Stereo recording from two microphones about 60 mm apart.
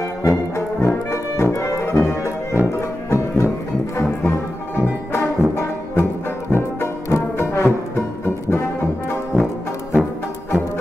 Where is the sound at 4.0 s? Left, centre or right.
Left.